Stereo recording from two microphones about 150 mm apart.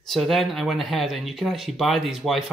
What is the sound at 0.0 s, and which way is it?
Speech, centre (ahead or behind).